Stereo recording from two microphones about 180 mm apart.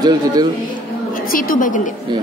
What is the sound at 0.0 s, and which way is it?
Speech, 20° right (ahead or behind).